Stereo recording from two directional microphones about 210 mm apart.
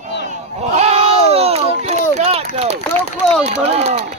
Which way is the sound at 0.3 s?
30° right (ahead or behind).